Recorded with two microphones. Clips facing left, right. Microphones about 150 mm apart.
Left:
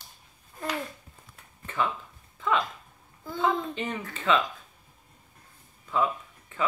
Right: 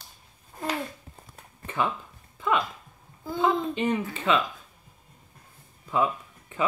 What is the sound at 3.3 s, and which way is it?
A woman's voice, 15° right (ahead or behind).